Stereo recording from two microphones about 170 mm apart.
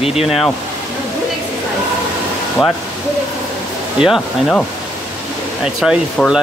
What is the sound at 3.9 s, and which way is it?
Speech, centre (ahead or behind).